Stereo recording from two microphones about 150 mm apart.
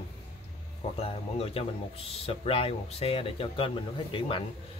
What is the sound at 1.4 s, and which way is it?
Speech, 40° left (ahead or behind).